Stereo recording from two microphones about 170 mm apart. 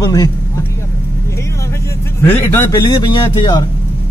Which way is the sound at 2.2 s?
15° left (ahead or behind).